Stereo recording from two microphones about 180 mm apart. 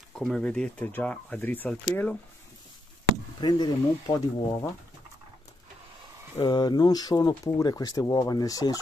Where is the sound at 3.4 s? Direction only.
25° left (ahead or behind).